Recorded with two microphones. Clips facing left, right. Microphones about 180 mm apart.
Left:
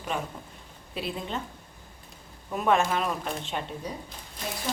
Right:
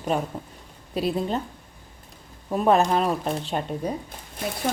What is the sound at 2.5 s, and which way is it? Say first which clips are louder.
A woman's voice: right 5 dB; 35° right (ahead or behind).